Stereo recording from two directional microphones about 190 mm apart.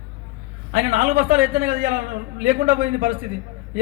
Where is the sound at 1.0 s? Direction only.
50° right (ahead or behind).